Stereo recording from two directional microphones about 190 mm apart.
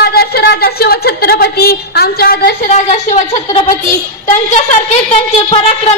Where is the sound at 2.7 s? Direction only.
40° left (ahead or behind).